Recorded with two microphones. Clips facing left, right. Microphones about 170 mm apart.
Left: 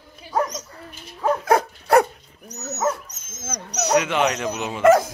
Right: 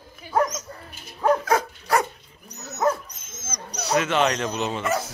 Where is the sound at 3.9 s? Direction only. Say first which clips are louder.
Left 1 dB; 15° left (ahead or behind).